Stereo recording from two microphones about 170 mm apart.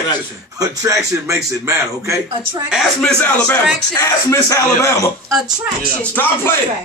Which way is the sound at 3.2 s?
10° left (ahead or behind).